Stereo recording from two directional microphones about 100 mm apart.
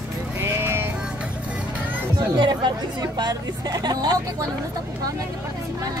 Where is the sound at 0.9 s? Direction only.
10° right (ahead or behind).